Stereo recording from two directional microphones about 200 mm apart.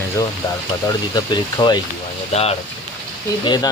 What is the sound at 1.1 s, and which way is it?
Speech, 20° left (ahead or behind).